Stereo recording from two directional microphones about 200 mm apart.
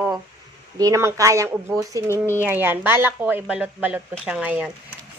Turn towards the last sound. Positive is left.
turn(degrees=-5)  # may be behind; listen again after turning